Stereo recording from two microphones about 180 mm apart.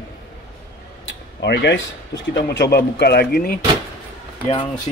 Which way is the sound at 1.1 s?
70° left (ahead or behind).